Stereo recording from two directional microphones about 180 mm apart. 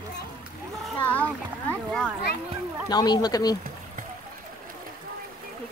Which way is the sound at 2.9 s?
25° left (ahead or behind).